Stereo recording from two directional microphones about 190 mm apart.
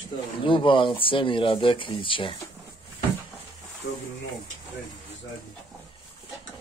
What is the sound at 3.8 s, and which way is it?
Speech, 50° left (ahead or behind).